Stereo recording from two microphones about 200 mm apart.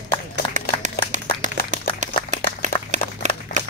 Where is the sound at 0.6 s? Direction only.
35° right (ahead or behind).